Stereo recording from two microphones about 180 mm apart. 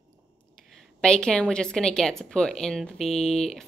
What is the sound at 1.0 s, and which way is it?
A woman's voice, 5° left (ahead or behind).